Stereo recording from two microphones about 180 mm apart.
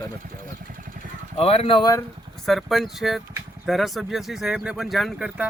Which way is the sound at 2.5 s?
Centre (ahead or behind).